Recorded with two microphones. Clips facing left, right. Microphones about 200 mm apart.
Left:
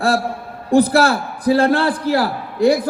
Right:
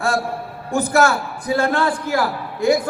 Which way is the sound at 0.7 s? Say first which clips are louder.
Left 4 dB; 35° left (ahead or behind).